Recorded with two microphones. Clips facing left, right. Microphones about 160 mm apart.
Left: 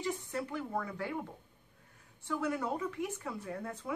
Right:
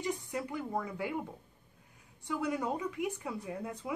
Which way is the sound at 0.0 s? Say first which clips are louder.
Right 1 dB; 15° right (ahead or behind).